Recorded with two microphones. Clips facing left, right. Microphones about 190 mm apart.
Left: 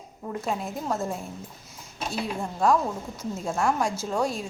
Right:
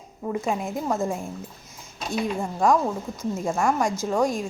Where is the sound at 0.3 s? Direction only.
5° right (ahead or behind).